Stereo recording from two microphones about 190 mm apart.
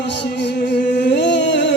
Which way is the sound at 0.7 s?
65° left (ahead or behind).